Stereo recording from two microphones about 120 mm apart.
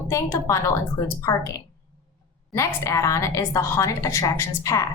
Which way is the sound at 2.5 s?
25° left (ahead or behind).